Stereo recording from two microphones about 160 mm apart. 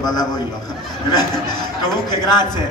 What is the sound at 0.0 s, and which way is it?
Speech, 25° left (ahead or behind).